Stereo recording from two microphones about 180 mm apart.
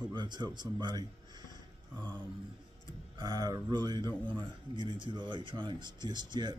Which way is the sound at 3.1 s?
20° right (ahead or behind).